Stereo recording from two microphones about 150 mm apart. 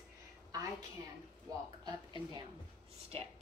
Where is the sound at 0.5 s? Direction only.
25° right (ahead or behind).